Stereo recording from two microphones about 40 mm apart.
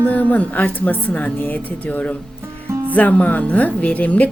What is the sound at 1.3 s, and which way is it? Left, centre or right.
A woman's voice, left.